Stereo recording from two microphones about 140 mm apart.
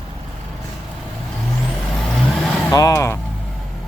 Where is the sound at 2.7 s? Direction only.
20° left (ahead or behind).